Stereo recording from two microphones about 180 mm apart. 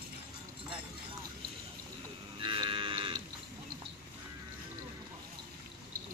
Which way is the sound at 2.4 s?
25° right (ahead or behind).